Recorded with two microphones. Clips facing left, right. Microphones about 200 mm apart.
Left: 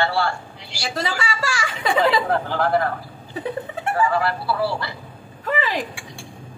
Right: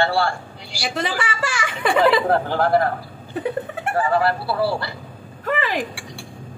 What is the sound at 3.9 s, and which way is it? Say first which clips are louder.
Speech: right 2 dB; 40° right (ahead or behind).